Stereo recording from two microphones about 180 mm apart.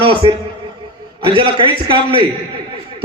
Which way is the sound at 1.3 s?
30° right (ahead or behind).